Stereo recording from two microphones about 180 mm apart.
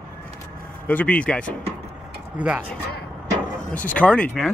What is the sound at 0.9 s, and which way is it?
Speech, 10° left (ahead or behind).